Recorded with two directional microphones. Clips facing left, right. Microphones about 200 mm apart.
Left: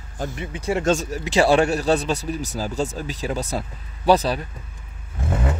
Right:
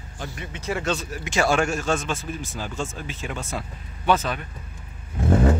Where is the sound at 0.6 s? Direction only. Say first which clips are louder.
Left 5 dB; 30° left (ahead or behind).